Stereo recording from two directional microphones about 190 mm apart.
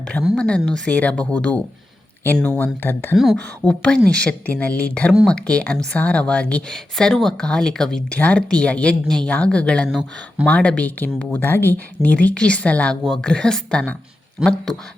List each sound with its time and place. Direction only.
0.3 s speech: 5° left (ahead or behind)